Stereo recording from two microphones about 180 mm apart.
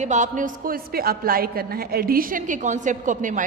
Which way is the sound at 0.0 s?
45° right (ahead or behind).